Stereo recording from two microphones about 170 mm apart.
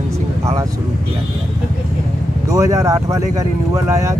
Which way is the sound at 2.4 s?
20° right (ahead or behind).